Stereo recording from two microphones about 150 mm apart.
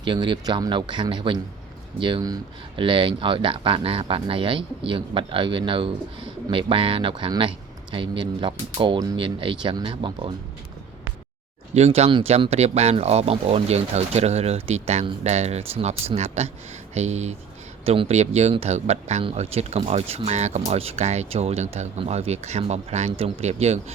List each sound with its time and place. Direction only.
0.0 s speech: 30° right (ahead or behind)
11.7 s speech: 45° right (ahead or behind)